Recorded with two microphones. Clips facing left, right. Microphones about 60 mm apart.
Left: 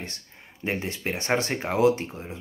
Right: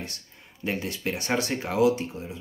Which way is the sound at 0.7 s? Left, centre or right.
Left.